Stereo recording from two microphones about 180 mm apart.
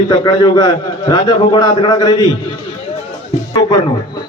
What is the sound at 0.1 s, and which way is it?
A man's voice, 25° left (ahead or behind).